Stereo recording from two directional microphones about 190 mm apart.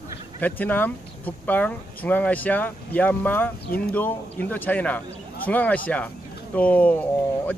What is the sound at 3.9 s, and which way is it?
Speech, 10° left (ahead or behind).